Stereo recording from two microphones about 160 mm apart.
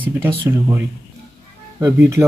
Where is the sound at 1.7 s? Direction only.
20° right (ahead or behind).